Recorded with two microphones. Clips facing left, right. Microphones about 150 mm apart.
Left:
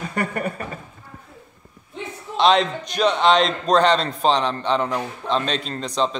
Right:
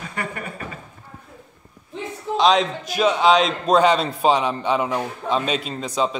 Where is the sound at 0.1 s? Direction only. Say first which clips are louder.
Left 5 dB; 45° left (ahead or behind).